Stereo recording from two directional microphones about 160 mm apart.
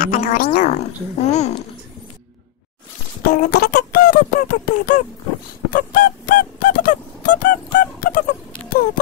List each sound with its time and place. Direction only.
0.0 s a woman's voice: 60° left (ahead or behind)
3.2 s a sound: 75° left (ahead or behind)
5.7 s music: 60° left (ahead or behind)